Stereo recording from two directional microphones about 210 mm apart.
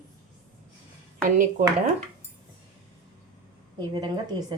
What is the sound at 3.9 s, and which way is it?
Speech, 20° right (ahead or behind).